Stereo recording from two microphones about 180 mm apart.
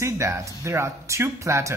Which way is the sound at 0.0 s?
15° right (ahead or behind).